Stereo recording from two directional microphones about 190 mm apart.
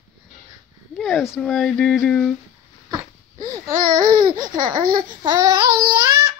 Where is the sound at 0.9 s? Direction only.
Centre (ahead or behind).